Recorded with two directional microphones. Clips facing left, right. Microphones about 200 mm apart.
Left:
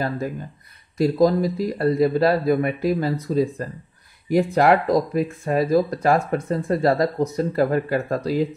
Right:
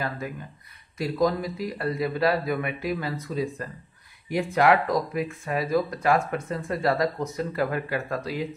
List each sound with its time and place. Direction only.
0.9 s speech: 40° left (ahead or behind)